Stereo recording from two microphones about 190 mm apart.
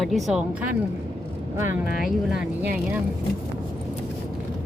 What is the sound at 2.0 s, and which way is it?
Speech, centre (ahead or behind).